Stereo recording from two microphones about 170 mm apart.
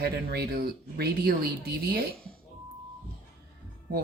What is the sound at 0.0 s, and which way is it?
Speech, 65° right (ahead or behind).